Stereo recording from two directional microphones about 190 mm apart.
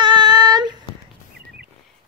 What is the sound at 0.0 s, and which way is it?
Child singing, 25° right (ahead or behind).